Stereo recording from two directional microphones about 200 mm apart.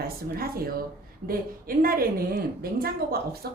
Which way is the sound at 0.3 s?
50° right (ahead or behind).